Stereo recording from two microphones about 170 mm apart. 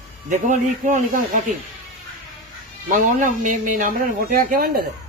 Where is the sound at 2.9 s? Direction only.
50° right (ahead or behind).